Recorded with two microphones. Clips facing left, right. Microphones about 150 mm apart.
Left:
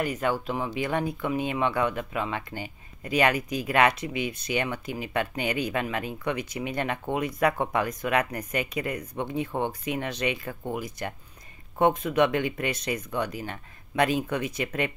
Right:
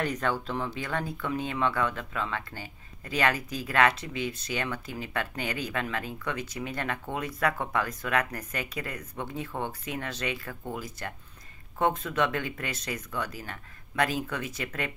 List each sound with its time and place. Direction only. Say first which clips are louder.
0.0 s speech: left 2 dB; 10° left (ahead or behind)